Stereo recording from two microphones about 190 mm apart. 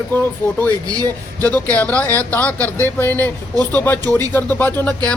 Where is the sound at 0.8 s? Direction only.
20° right (ahead or behind).